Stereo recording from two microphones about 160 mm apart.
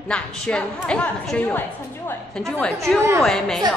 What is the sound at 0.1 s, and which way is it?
A woman's voice, 5° left (ahead or behind).